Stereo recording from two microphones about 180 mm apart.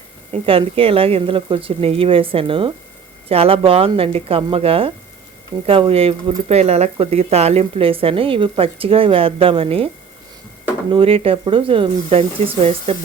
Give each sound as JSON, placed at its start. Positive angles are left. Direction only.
{"t": 0.4, "sound": "a woman's voice", "side_deg": -30}
{"t": 10.9, "sound": "a woman's voice", "side_deg": -30}